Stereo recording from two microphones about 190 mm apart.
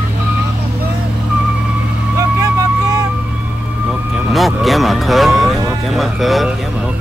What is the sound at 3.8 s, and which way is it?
Vehicle, 5° right (ahead or behind).